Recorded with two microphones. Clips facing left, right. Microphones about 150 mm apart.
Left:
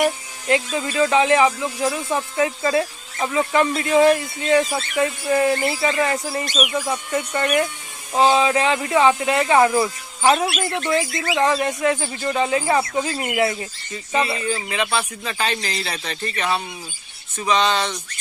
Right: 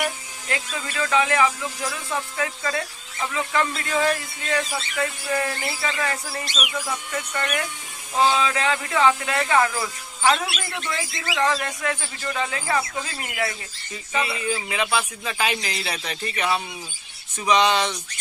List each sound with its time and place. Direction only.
0.4 s speech: 25° left (ahead or behind)
10.3 s a woman's voice: 45° left (ahead or behind)
11.3 s speech: 25° left (ahead or behind)
14.2 s speech: 40° left (ahead or behind)
14.4 s speech: 5° right (ahead or behind)